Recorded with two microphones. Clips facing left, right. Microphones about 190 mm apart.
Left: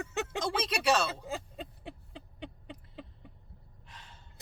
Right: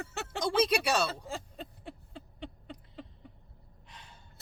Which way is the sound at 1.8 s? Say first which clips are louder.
Even; 15° left (ahead or behind).